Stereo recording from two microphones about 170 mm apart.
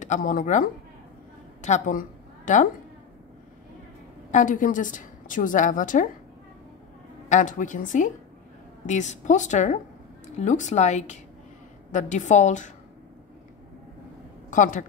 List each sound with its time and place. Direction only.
0.0 s a woman's voice: 50° left (ahead or behind)
4.3 s a woman's voice: 50° left (ahead or behind)
7.2 s a woman's voice: 50° left (ahead or behind)
14.5 s a woman's voice: 50° left (ahead or behind)